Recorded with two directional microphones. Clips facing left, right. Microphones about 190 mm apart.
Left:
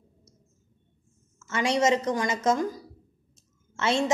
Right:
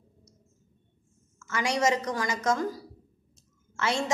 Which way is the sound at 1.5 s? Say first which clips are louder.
Left 3 dB; 25° left (ahead or behind).